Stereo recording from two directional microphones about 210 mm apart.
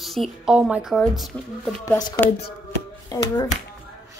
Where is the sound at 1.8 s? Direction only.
20° left (ahead or behind).